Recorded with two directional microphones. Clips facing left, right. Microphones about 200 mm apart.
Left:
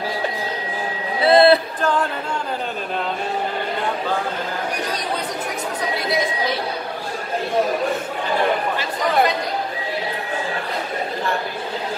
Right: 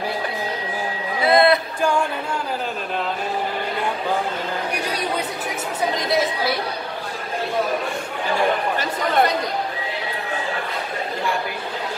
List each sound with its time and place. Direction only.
1.2 s a sound: 30° left (ahead or behind)
1.8 s music: 10° right (ahead or behind)
6.0 s a woman's voice: centre (ahead or behind)